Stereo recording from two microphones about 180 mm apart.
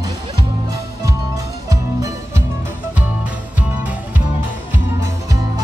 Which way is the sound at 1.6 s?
20° right (ahead or behind).